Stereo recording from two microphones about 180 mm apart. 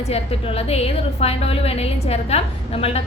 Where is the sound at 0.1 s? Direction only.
35° left (ahead or behind).